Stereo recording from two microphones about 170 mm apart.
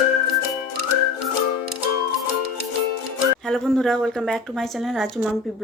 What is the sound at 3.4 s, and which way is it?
Speech, centre (ahead or behind).